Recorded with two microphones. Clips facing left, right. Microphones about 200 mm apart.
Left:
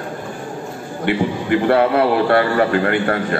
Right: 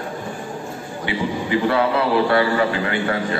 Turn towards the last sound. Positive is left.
turn(degrees=55)  # may be behind; listen again after turning